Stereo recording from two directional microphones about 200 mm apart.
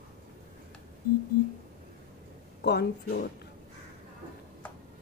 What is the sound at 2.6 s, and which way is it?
Speech, 55° left (ahead or behind).